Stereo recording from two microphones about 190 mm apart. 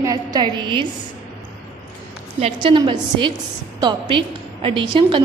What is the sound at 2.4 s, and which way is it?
A woman's voice, 25° right (ahead or behind).